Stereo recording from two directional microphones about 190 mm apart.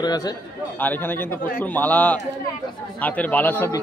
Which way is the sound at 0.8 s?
10° left (ahead or behind).